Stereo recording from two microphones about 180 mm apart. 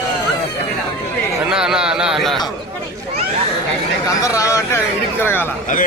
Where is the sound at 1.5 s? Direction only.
5° right (ahead or behind).